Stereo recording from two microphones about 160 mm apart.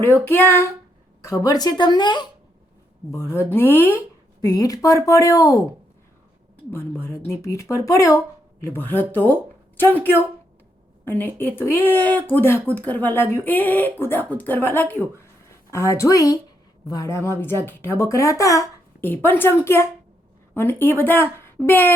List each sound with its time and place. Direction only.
0.0 s a woman's voice: 15° left (ahead or behind)
3.1 s a woman's voice: 15° left (ahead or behind)
6.7 s a woman's voice: 15° left (ahead or behind)